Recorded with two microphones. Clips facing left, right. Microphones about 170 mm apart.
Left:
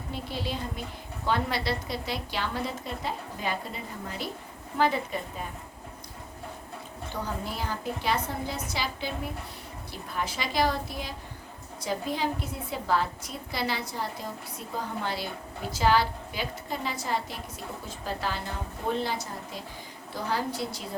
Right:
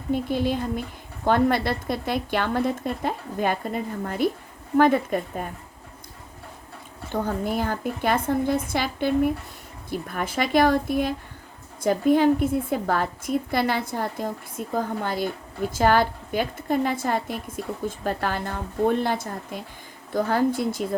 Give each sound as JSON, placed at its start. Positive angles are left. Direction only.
{"t": 0.1, "sound": "a woman's voice", "side_deg": -50}
{"t": 7.1, "sound": "a woman's voice", "side_deg": -50}